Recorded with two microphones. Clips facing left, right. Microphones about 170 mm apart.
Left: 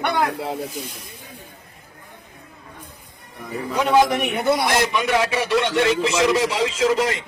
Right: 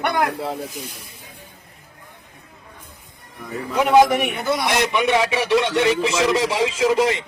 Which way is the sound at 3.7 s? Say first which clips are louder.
Right 3 dB; 5° right (ahead or behind).